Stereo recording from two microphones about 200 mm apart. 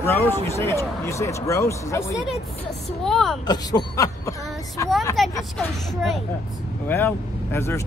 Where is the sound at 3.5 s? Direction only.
20° left (ahead or behind).